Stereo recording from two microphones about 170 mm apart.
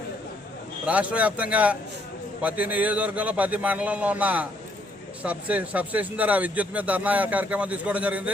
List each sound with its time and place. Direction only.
0.9 s speech: 10° right (ahead or behind)